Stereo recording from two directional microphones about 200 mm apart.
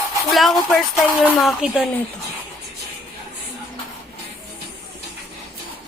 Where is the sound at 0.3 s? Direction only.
Centre (ahead or behind).